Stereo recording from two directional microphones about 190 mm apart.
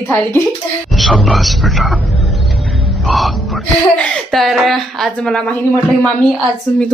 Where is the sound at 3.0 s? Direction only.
Centre (ahead or behind).